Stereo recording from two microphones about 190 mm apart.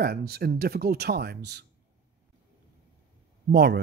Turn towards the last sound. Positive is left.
turn(degrees=-60)  # may be behind; listen again after turning